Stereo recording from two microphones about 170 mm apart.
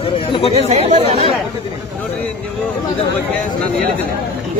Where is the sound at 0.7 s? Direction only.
35° right (ahead or behind).